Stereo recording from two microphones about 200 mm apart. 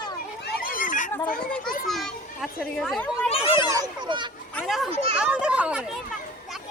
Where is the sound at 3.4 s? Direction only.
25° left (ahead or behind).